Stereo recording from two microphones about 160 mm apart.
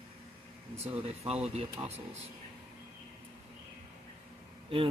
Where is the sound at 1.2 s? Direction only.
40° right (ahead or behind).